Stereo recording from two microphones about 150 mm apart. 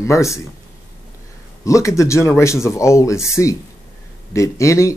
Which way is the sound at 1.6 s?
20° left (ahead or behind).